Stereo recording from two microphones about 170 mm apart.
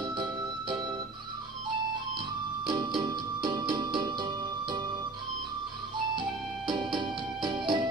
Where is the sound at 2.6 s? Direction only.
25° right (ahead or behind).